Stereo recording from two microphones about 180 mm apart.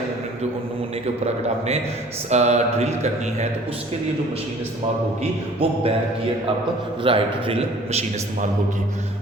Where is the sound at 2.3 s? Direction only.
40° right (ahead or behind).